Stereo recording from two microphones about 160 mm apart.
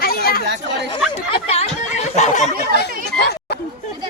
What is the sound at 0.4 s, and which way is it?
Speech, 90° right.